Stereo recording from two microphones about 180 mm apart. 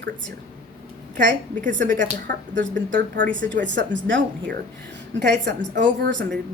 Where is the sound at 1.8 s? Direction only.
45° right (ahead or behind).